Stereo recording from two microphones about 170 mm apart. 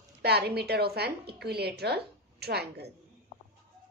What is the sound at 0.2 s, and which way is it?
A woman's voice, 70° right (ahead or behind).